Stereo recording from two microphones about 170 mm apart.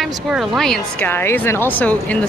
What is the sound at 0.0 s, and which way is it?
A woman's voice, centre (ahead or behind).